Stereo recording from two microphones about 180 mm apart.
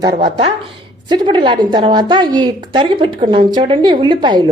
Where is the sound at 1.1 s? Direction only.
25° right (ahead or behind).